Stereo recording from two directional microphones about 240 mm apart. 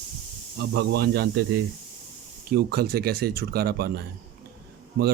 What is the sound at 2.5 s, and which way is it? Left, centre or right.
Speech, right.